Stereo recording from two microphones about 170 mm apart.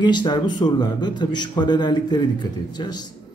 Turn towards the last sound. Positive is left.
turn(degrees=25)  # may be behind; listen again after turning